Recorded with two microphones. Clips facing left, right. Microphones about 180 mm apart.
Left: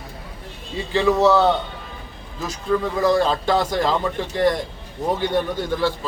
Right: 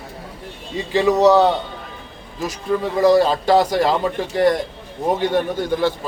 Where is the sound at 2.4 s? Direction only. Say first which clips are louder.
Right 1 dB; 15° right (ahead or behind).